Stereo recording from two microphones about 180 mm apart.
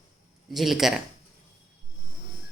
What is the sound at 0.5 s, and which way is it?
Speech, centre (ahead or behind).